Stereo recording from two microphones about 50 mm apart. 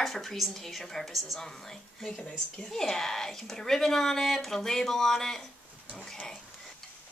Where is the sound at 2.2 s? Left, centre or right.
Centre.